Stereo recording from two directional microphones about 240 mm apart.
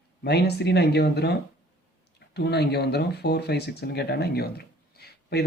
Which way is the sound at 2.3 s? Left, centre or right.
Left.